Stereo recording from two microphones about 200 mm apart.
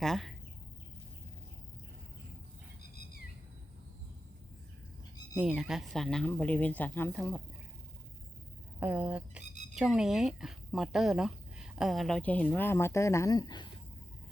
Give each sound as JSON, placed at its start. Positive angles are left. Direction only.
{"t": 0.0, "sound": "speech", "side_deg": 0}
{"t": 2.9, "sound": "a sound", "side_deg": 45}
{"t": 5.4, "sound": "speech", "side_deg": -5}
{"t": 8.8, "sound": "speech", "side_deg": -10}